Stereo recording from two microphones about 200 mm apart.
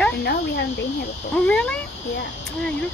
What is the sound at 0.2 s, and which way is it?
Speech, 55° left (ahead or behind).